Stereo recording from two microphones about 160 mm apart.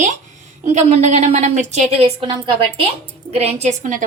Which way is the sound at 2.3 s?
30° right (ahead or behind).